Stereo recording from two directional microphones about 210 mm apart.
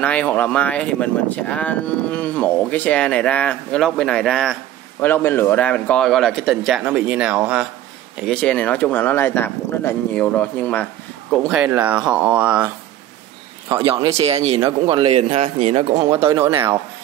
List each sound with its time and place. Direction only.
0.0 s speech: 5° left (ahead or behind)
11.4 s speech: 10° right (ahead or behind)
14.2 s speech: 30° right (ahead or behind)
16.3 s speech: 15° right (ahead or behind)